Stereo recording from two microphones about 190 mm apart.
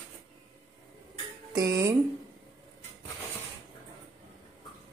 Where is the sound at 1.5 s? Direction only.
15° right (ahead or behind).